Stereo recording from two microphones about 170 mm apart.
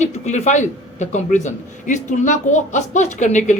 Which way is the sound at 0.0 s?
45° left (ahead or behind).